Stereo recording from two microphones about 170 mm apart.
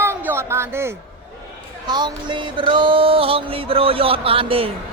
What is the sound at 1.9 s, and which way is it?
A man's voice, 25° right (ahead or behind).